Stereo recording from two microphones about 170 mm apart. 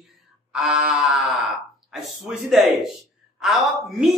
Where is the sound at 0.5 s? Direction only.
Centre (ahead or behind).